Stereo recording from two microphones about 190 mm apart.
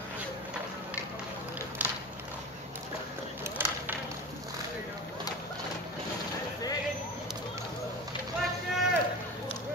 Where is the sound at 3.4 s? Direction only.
10° right (ahead or behind).